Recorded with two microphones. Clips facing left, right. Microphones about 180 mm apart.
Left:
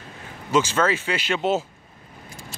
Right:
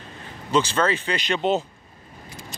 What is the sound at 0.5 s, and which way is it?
Speech, 10° left (ahead or behind).